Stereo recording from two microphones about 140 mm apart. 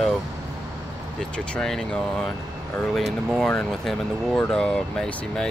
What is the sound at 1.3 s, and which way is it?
Speech, 5° left (ahead or behind).